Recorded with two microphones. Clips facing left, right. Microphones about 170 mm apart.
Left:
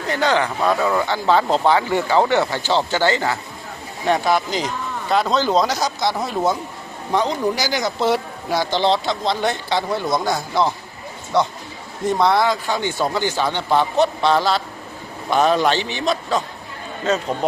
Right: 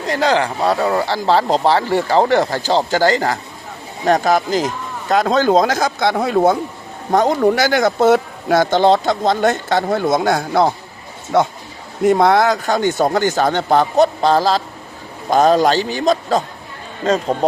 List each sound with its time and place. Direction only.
0.1 s speech: 30° right (ahead or behind); by 6.6 s 55° right (ahead or behind)
7.1 s speech: 45° right (ahead or behind)
12.1 s speech: 50° right (ahead or behind)